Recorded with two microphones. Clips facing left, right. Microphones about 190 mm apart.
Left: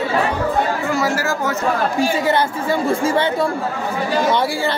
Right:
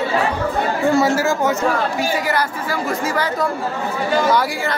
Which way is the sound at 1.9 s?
25° left (ahead or behind).